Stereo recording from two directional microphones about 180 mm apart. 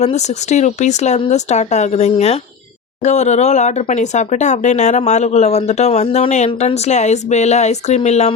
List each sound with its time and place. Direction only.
0.0 s speech: 40° left (ahead or behind)